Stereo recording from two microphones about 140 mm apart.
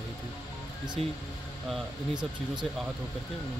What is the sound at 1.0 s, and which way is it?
Speech, 45° right (ahead or behind).